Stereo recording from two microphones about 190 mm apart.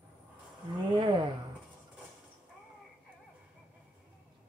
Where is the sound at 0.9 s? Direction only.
25° right (ahead or behind).